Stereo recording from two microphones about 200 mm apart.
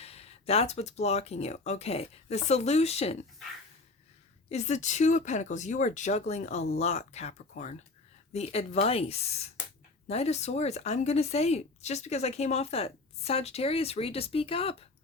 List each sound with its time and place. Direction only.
0.0 s a woman's voice: 30° left (ahead or behind)
4.4 s a woman's voice: 35° left (ahead or behind)